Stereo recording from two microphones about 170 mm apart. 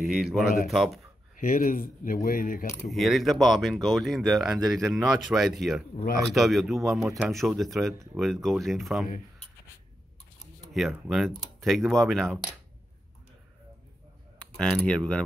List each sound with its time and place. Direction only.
0.1 s speech: centre (ahead or behind)
1.3 s speech: 55° left (ahead or behind)
2.9 s speech: centre (ahead or behind)
10.7 s speech: centre (ahead or behind)
14.6 s speech: 5° left (ahead or behind)